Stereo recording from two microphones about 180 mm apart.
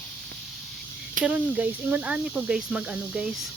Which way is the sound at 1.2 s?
10° right (ahead or behind).